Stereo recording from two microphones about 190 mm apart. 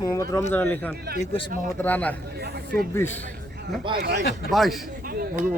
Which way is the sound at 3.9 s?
60° right (ahead or behind).